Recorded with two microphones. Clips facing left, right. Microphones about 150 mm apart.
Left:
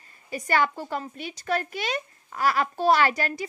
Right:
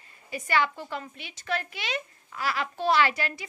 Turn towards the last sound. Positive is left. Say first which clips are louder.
# left 2 dB
turn(degrees=40)  # may be behind; listen again after turning